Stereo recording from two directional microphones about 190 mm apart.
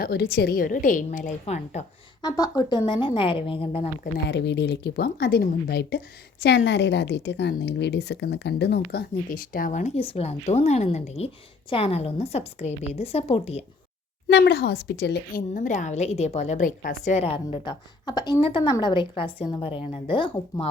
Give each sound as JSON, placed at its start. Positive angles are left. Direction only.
{"t": 0.0, "sound": "a woman's voice", "side_deg": 55}
{"t": 2.2, "sound": "a woman's voice", "side_deg": 20}
{"t": 4.3, "sound": "a woman's voice", "side_deg": 65}
{"t": 14.3, "sound": "a woman's voice", "side_deg": 65}
{"t": 15.5, "sound": "a woman's voice", "side_deg": 40}